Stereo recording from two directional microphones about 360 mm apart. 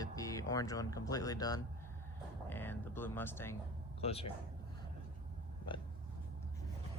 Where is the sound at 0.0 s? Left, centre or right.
Centre.